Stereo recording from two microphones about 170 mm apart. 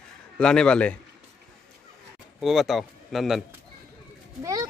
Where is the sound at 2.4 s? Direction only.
Centre (ahead or behind).